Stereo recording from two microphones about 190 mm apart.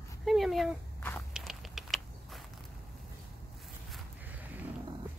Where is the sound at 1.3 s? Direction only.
Centre (ahead or behind).